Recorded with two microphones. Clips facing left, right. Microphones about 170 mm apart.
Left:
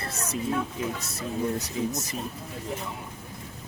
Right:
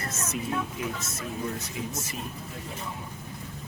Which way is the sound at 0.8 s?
30° left (ahead or behind).